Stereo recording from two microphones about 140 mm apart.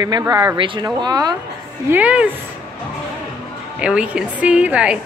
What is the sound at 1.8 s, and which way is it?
Speech, 10° right (ahead or behind).